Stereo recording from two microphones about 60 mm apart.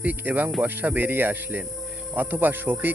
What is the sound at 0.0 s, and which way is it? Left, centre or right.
Speech, right.